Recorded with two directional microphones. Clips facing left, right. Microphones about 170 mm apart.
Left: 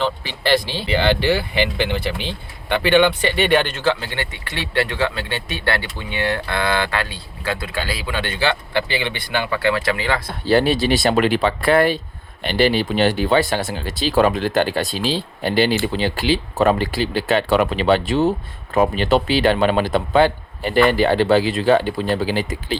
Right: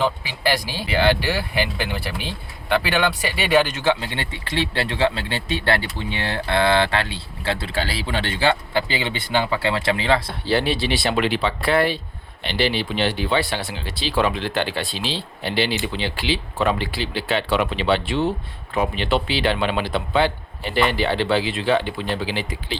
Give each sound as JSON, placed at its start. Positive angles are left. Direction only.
{"t": 0.0, "sound": "speech", "side_deg": -10}
{"t": 3.8, "sound": "speech", "side_deg": -25}
{"t": 10.2, "sound": "speech", "side_deg": 45}